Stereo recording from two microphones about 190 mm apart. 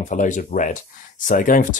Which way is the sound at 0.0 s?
40° left (ahead or behind).